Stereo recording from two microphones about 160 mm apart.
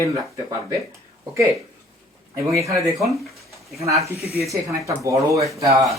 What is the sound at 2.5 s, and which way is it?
Speech, 20° right (ahead or behind).